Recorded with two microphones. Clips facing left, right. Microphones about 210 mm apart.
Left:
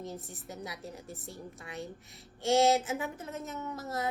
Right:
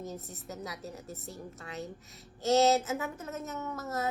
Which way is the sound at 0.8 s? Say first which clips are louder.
Right 1 dB; 25° right (ahead or behind).